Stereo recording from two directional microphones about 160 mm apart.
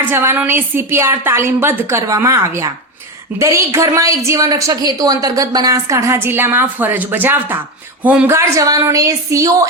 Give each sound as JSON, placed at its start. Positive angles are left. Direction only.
{"t": 0.0, "sound": "a woman's voice", "side_deg": -15}